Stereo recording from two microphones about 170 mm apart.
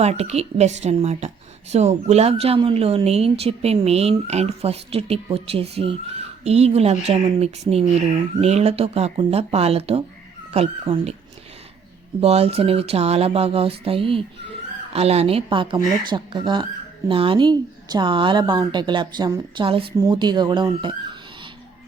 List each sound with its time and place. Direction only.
0.0 s a woman's voice: 40° right (ahead or behind)
12.2 s a woman's voice: 35° right (ahead or behind)